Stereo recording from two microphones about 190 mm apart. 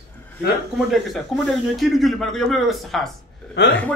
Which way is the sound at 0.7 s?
Centre (ahead or behind).